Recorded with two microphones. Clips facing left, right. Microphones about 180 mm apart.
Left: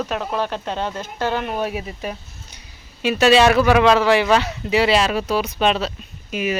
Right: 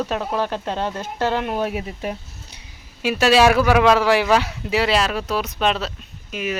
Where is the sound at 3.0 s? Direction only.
5° right (ahead or behind).